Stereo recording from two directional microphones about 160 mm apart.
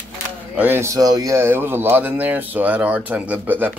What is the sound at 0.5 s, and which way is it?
Speech, 10° right (ahead or behind).